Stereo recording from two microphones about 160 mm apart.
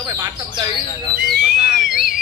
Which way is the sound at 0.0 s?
20° right (ahead or behind).